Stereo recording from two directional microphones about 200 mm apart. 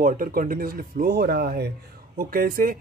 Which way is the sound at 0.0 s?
45° right (ahead or behind).